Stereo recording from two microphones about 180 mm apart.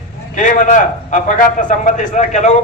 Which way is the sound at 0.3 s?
45° left (ahead or behind).